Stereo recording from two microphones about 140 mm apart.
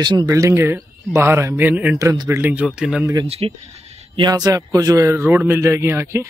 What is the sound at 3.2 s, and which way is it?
Speech, 45° right (ahead or behind).